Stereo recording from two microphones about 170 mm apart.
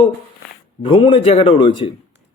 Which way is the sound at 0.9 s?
30° left (ahead or behind).